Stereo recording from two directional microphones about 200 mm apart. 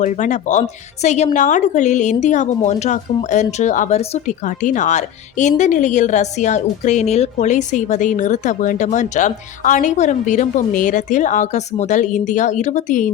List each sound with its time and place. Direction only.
0.0 s speech: 35° left (ahead or behind)